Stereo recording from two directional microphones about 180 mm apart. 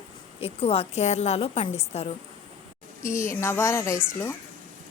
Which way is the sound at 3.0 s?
15° left (ahead or behind).